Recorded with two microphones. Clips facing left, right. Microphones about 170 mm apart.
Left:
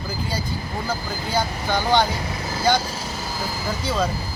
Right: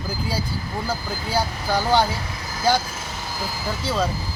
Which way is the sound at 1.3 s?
5° right (ahead or behind).